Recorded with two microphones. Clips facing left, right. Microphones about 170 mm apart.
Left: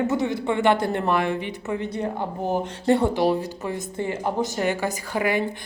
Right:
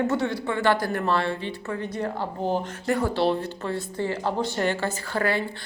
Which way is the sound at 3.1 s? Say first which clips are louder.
Left 2 dB; 15° left (ahead or behind).